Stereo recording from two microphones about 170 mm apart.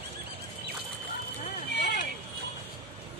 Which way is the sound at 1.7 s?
75° left (ahead or behind).